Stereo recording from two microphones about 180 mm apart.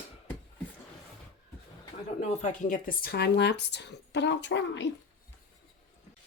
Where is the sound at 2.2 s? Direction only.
40° left (ahead or behind); by 4.8 s 75° left (ahead or behind).